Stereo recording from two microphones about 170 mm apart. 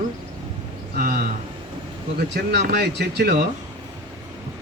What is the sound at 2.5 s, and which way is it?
Speech, 65° right (ahead or behind).